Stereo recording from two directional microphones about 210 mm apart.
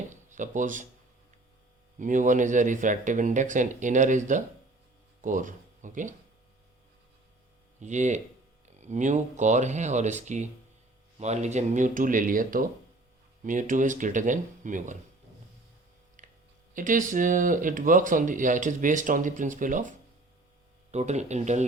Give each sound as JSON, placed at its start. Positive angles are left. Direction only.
{"t": 0.1, "sound": "speech", "side_deg": -35}
{"t": 2.0, "sound": "speech", "side_deg": -35}
{"t": 7.8, "sound": "speech", "side_deg": -35}
{"t": 16.2, "sound": "a sound", "side_deg": -40}
{"t": 16.7, "sound": "speech", "side_deg": -40}
{"t": 20.9, "sound": "speech", "side_deg": -30}